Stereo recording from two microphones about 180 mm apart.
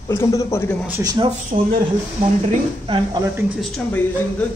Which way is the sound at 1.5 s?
45° right (ahead or behind).